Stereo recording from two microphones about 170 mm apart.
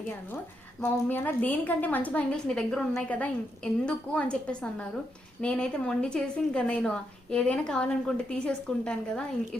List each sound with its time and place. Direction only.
0.8 s a woman's voice: 10° left (ahead or behind)